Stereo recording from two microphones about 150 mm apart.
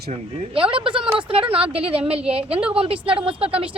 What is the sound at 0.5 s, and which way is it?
Speech, 35° right (ahead or behind).